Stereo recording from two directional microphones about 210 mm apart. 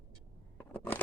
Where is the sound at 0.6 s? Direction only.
10° left (ahead or behind).